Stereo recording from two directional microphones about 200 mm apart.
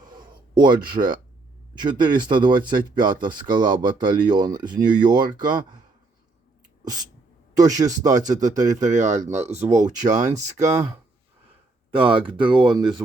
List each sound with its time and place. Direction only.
0.1 s a sound: 20° right (ahead or behind)
1.8 s speech: 20° right (ahead or behind)
7.5 s speech: 20° right (ahead or behind)
8.8 s speech: 40° right (ahead or behind)
11.9 s speech: 25° right (ahead or behind)